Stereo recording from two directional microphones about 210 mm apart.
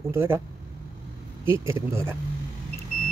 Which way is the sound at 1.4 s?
10° right (ahead or behind).